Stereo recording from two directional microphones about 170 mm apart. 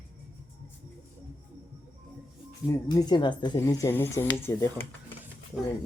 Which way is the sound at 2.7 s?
20° left (ahead or behind).